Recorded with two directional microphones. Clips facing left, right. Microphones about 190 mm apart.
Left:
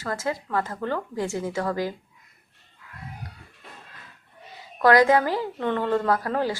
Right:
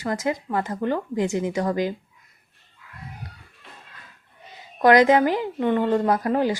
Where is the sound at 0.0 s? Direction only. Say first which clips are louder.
Right 3 dB; 15° right (ahead or behind).